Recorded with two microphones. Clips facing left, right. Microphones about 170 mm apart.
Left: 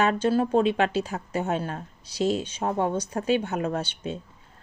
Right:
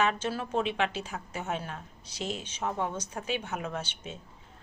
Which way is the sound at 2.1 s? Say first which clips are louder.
Left 11 dB; 35° left (ahead or behind).